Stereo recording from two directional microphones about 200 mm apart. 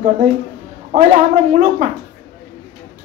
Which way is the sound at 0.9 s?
35° right (ahead or behind).